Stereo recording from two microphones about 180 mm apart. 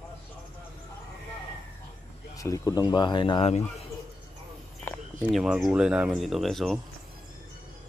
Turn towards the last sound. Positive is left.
turn(degrees=0)  # may be behind; listen again after turning